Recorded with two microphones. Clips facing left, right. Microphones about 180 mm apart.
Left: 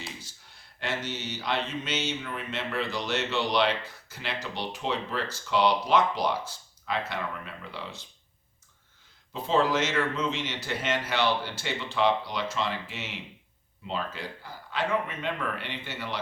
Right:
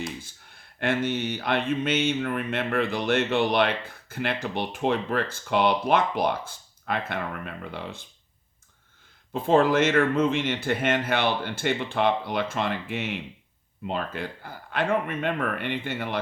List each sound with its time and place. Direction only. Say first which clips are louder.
0.2 s speech: right 6 dB; 55° right (ahead or behind)
9.3 s speech: right 5 dB; 55° right (ahead or behind)